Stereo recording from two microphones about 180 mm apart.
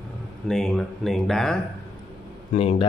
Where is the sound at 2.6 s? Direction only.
35° left (ahead or behind).